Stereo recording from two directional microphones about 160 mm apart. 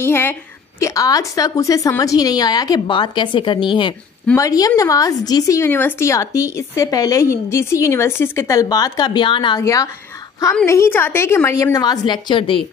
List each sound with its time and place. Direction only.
0.0 s a woman's voice: 15° left (ahead or behind); by 9.6 s 30° left (ahead or behind)
9.6 s a woman's voice: 20° left (ahead or behind)